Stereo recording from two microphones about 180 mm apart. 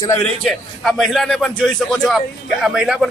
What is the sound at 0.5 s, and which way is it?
A man's voice, centre (ahead or behind).